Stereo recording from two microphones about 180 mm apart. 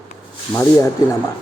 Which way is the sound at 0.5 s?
10° left (ahead or behind).